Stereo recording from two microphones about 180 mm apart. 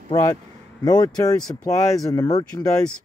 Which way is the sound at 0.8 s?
20° left (ahead or behind).